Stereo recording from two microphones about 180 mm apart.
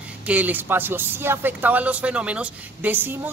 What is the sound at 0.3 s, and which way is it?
Speech, 10° right (ahead or behind).